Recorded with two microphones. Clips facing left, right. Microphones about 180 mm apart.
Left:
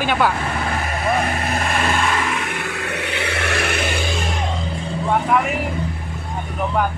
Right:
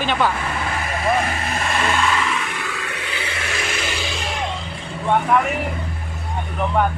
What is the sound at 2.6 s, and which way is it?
Vehicle, 60° left (ahead or behind).